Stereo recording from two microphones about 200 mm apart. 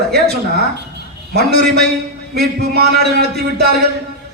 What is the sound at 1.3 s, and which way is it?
A man's voice, 50° right (ahead or behind).